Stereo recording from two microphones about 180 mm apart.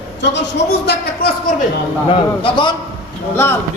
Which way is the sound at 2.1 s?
30° left (ahead or behind).